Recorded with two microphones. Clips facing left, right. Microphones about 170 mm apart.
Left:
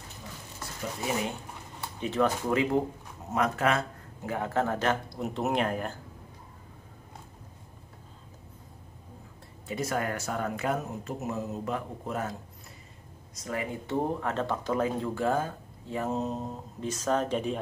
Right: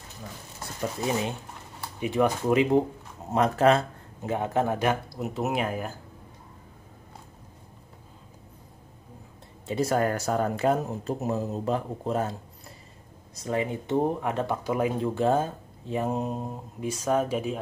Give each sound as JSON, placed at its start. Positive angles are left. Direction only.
{"t": 2.0, "sound": "speech", "side_deg": -10}
{"t": 3.3, "sound": "speech", "side_deg": -30}
{"t": 5.2, "sound": "speech", "side_deg": -5}
{"t": 9.7, "sound": "speech", "side_deg": -30}